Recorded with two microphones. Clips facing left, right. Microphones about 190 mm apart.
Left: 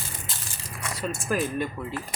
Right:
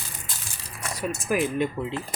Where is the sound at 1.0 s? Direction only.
15° right (ahead or behind).